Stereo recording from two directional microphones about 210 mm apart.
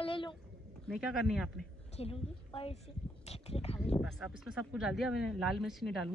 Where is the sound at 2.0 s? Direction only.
25° left (ahead or behind).